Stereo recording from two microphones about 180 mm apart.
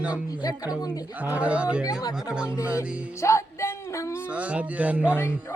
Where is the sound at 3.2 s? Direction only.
15° left (ahead or behind).